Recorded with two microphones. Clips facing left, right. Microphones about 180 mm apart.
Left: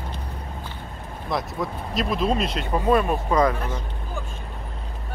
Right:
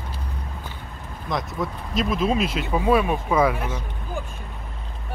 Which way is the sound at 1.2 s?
Centre (ahead or behind).